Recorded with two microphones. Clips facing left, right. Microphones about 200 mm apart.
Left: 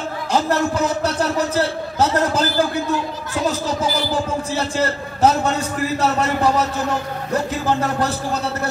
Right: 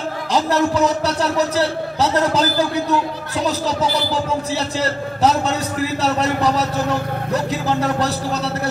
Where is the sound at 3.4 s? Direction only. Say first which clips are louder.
Right 1 dB; 50° left (ahead or behind).